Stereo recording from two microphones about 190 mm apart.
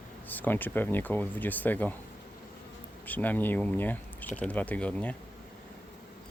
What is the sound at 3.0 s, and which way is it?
Speech, 10° left (ahead or behind).